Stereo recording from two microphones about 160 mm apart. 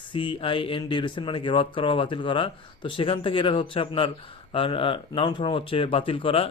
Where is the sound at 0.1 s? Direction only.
35° left (ahead or behind).